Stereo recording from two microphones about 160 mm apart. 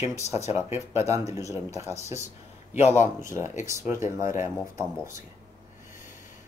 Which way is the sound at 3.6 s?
15° right (ahead or behind).